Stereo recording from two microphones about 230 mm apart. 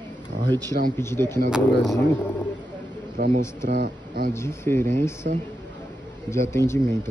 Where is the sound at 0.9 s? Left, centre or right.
Centre.